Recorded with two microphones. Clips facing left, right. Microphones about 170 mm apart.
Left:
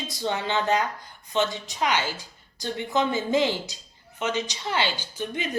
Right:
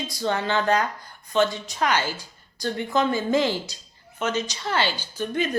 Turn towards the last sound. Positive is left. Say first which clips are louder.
# right 4 dB
turn(degrees=15)  # may be behind; listen again after turning